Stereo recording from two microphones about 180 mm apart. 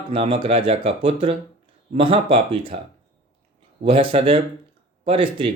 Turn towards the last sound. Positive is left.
turn(degrees=-30)  # may be behind; listen again after turning